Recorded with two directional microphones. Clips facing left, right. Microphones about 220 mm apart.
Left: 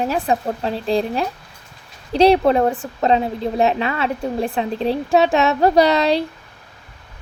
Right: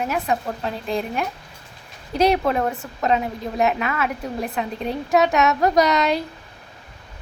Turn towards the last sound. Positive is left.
turn(degrees=30)  # may be behind; listen again after turning